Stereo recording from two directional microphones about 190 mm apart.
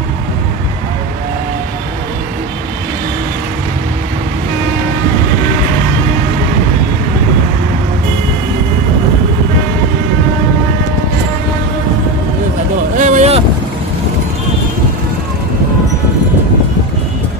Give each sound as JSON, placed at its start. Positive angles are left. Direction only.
{"t": 12.9, "sound": "vehicle", "side_deg": -45}